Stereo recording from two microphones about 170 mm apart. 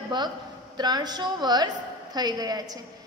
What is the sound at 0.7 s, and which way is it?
A woman's voice, 25° right (ahead or behind).